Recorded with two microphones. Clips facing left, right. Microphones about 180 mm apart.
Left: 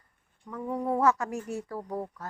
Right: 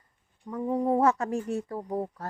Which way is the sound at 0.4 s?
25° right (ahead or behind).